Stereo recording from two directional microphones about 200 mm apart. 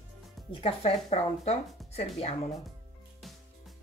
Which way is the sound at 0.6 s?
30° left (ahead or behind).